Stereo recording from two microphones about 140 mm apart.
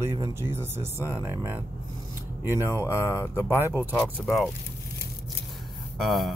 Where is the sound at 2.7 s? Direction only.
20° left (ahead or behind).